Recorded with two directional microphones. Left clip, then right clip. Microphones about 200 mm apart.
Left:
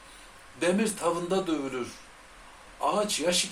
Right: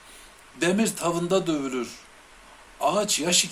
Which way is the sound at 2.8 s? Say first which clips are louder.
Right 3 dB; 45° right (ahead or behind).